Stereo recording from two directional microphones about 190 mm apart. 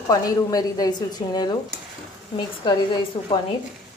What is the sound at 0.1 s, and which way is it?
A woman's voice, 20° left (ahead or behind).